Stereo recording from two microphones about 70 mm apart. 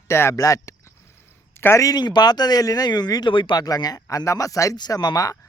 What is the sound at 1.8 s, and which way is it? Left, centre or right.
Speech, left.